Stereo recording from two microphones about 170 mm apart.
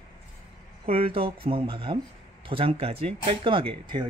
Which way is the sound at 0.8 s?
35° right (ahead or behind).